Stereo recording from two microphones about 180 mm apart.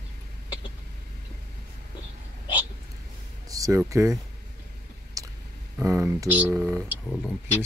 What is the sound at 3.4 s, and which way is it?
Speech, 20° right (ahead or behind).